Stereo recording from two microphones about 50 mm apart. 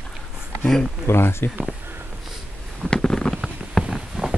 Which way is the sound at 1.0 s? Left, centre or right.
Left.